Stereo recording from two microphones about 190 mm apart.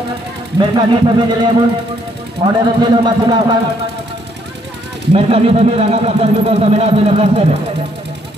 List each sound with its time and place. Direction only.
0.6 s speech: 25° right (ahead or behind)
5.1 s speech: 30° right (ahead or behind)